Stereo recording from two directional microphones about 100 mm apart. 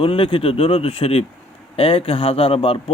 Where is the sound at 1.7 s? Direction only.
70° left (ahead or behind).